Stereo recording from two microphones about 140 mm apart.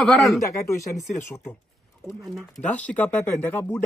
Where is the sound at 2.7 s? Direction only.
10° left (ahead or behind).